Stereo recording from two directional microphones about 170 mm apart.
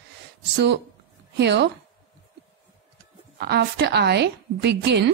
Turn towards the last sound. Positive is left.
turn(degrees=-80)